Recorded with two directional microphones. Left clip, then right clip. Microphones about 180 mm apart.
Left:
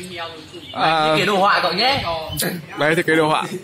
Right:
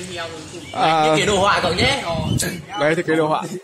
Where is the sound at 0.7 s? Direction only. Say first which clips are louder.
Right 1 dB; 20° right (ahead or behind).